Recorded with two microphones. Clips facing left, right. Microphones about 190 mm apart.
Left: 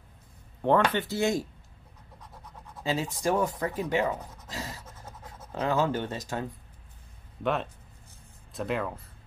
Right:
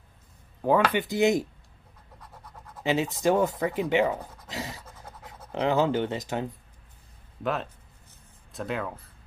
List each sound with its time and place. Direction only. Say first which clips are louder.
0.6 s speech: right 1 dB; 5° right (ahead or behind)
2.8 s speech: right 4 dB; 20° right (ahead or behind)
4.5 s pant: right 2 dB; 20° right (ahead or behind)
5.0 s speech: even; 15° right (ahead or behind)
7.4 s speech: left 1 dB; centre (ahead or behind)